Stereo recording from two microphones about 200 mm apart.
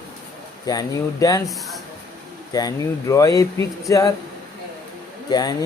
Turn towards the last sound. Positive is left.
turn(degrees=20)  # may be behind; listen again after turning